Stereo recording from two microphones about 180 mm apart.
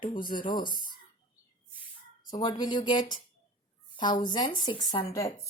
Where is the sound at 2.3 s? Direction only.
25° left (ahead or behind).